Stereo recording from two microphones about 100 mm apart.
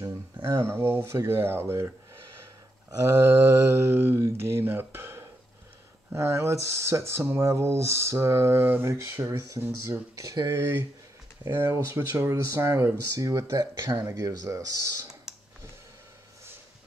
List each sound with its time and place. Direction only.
0.0 s speech: 25° right (ahead or behind)
3.3 s speech: 25° right (ahead or behind)
10.5 s speech: 25° right (ahead or behind)